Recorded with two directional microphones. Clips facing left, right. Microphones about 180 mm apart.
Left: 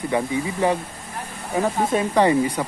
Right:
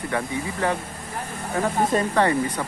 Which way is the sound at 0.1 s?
15° left (ahead or behind).